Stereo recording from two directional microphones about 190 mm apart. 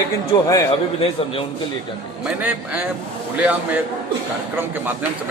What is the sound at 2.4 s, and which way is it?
A man's voice, 10° right (ahead or behind).